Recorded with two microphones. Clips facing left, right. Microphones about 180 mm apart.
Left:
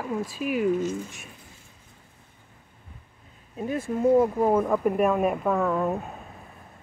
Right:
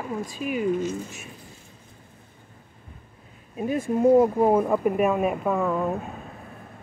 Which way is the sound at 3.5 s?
15° right (ahead or behind).